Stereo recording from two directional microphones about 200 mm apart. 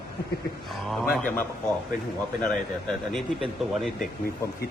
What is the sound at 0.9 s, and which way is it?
Speech, 5° left (ahead or behind).